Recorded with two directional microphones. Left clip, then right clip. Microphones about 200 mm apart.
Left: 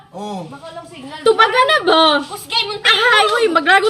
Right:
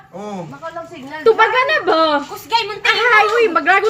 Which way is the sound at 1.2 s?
20° left (ahead or behind).